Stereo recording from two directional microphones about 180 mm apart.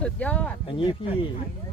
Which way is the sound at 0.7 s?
30° left (ahead or behind).